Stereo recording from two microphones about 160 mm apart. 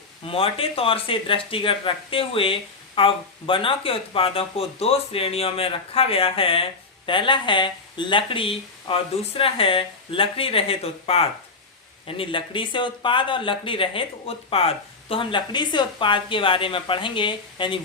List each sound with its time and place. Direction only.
0.3 s speech: 35° left (ahead or behind)